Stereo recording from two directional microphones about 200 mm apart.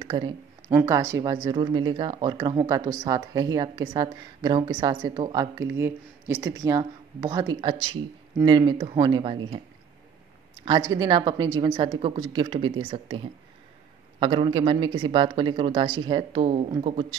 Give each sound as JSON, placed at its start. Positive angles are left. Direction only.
{"t": 0.0, "sound": "a sound", "side_deg": -20}
{"t": 0.7, "sound": "speech", "side_deg": -15}
{"t": 10.6, "sound": "speech", "side_deg": -20}